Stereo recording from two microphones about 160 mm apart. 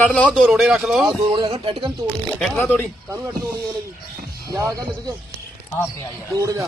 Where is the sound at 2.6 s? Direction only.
10° left (ahead or behind).